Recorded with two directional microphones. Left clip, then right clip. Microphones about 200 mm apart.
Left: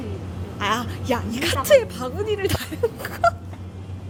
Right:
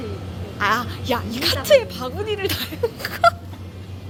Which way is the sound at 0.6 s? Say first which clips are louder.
Right 3 dB; 15° left (ahead or behind).